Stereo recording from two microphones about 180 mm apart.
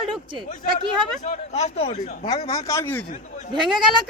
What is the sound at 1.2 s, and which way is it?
Speech, 35° left (ahead or behind).